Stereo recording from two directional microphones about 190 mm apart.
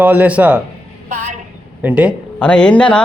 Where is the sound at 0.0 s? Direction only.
10° right (ahead or behind).